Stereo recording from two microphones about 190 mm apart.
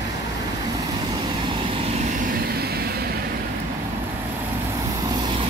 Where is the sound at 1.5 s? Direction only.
30° right (ahead or behind); by 3.1 s 55° right (ahead or behind).